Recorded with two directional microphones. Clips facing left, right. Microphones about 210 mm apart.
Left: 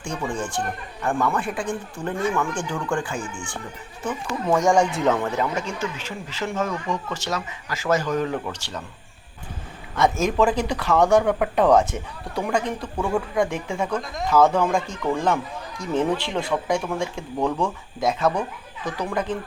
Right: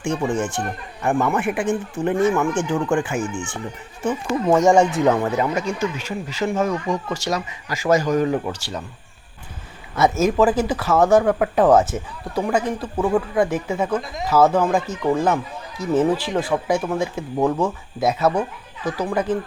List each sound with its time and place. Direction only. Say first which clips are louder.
0.1 s speech: right 5 dB; 25° right (ahead or behind)
9.9 s speech: right 3 dB; 5° right (ahead or behind)